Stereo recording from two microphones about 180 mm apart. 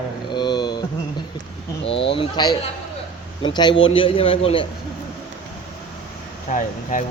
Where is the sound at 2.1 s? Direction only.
25° left (ahead or behind).